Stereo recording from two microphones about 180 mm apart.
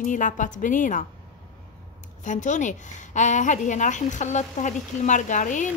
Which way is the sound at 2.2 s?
45° left (ahead or behind).